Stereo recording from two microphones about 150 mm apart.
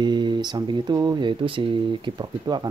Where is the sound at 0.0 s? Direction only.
30° right (ahead or behind).